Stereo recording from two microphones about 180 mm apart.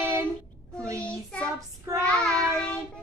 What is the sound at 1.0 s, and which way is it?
Child singing, 5° left (ahead or behind).